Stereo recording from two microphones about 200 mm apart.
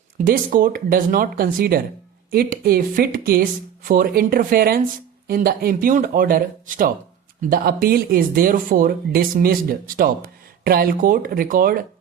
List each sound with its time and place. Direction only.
0.3 s speech: 45° right (ahead or behind)